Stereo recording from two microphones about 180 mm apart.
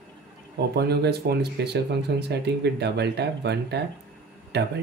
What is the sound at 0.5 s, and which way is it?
Speech, 65° right (ahead or behind).